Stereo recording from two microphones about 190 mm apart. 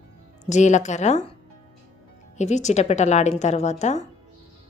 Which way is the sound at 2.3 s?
40° left (ahead or behind).